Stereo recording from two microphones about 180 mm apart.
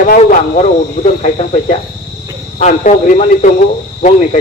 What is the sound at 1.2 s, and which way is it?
A man's voice, 40° left (ahead or behind).